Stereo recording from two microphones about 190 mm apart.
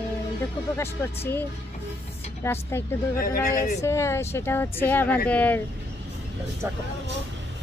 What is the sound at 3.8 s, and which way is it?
Speech, 15° left (ahead or behind).